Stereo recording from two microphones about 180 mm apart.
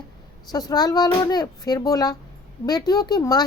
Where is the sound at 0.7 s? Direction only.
20° left (ahead or behind).